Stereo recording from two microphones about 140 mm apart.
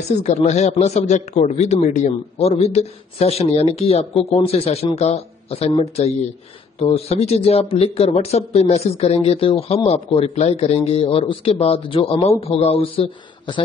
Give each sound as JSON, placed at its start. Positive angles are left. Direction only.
{"t": 0.2, "sound": "speech", "side_deg": 50}